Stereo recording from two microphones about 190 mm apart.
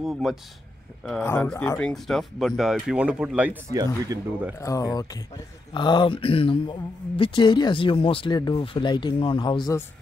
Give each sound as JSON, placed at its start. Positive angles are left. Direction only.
{"t": 0.0, "sound": "speech", "side_deg": 0}
{"t": 1.2, "sound": "speech", "side_deg": 10}
{"t": 3.7, "sound": "speech", "side_deg": -20}
{"t": 4.6, "sound": "speech", "side_deg": 15}